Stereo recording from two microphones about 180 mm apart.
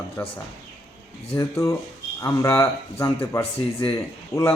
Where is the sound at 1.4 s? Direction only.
15° left (ahead or behind).